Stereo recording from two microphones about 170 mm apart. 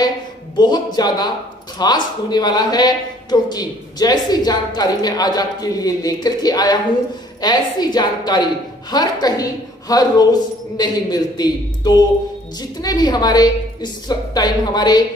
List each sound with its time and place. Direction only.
0.6 s a man's voice: 25° left (ahead or behind)